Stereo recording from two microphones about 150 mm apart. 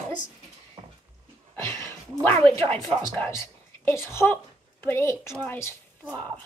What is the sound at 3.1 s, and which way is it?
A woman's voice, 15° left (ahead or behind).